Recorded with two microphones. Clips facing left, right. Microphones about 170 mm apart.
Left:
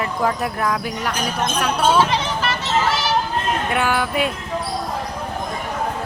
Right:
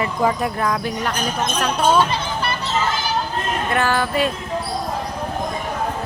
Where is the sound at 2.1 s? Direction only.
90° left.